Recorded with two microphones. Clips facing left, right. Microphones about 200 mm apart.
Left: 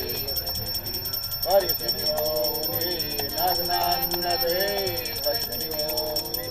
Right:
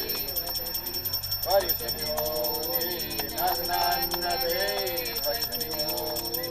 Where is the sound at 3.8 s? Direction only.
20° left (ahead or behind).